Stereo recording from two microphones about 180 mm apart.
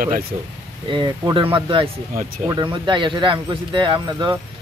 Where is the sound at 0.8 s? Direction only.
25° right (ahead or behind).